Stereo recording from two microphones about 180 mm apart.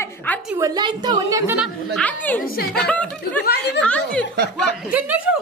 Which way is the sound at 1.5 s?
Centre (ahead or behind).